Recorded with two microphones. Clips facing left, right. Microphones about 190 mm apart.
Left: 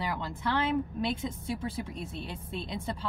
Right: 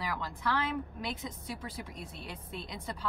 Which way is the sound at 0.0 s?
25° left (ahead or behind).